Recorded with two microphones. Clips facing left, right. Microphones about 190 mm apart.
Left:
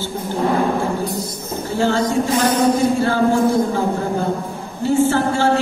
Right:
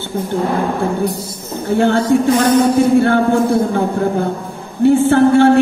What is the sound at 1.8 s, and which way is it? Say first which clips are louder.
Speech: right 4 dB; 60° right (ahead or behind).